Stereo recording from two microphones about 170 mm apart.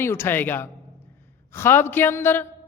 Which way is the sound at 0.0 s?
15° left (ahead or behind).